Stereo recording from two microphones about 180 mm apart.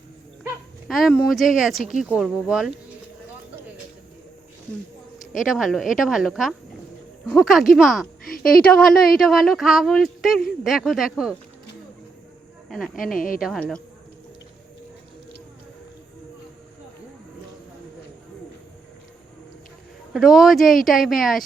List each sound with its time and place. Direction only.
0.9 s speech: centre (ahead or behind)
5.4 s speech: centre (ahead or behind)
12.6 s speech: centre (ahead or behind)
13.1 s speech: 50° left (ahead or behind)
13.6 s speech: 5° left (ahead or behind)
20.1 s speech: centre (ahead or behind)